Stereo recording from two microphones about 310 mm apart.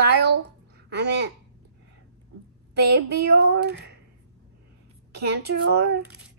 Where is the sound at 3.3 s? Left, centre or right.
Right.